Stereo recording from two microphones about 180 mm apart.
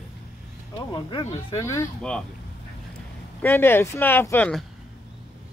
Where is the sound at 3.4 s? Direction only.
10° left (ahead or behind).